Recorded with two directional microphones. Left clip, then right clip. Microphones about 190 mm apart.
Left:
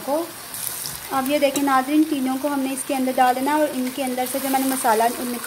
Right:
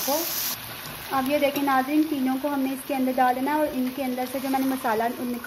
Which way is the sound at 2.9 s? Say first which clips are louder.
Left 4 dB; 10° left (ahead or behind).